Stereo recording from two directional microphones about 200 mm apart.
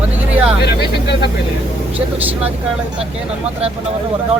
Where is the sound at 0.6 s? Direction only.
55° left (ahead or behind).